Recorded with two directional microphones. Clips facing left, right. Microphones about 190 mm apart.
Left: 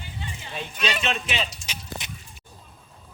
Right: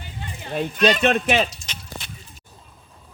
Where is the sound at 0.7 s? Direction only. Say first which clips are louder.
Right 10 dB; 10° left (ahead or behind).